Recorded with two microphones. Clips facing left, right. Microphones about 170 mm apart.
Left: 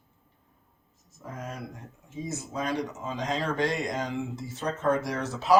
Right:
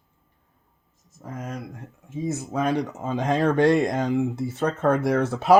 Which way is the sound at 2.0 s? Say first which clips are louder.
Right 7 dB; 55° right (ahead or behind).